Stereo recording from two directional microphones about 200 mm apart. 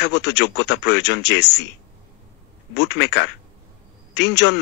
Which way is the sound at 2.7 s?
60° left (ahead or behind).